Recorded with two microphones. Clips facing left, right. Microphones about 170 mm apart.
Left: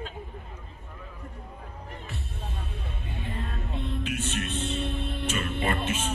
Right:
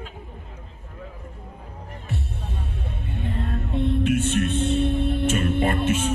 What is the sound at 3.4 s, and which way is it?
Music, 55° right (ahead or behind).